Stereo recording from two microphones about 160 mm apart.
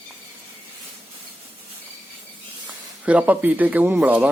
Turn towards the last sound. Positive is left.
turn(degrees=-10)  # may be behind; listen again after turning